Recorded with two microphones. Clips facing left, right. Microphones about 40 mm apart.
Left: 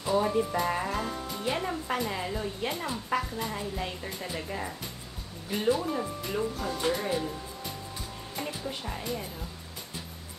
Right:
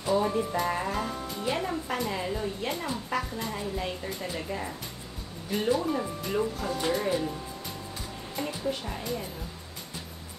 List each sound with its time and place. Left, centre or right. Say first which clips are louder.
0.0 s speech: even; centre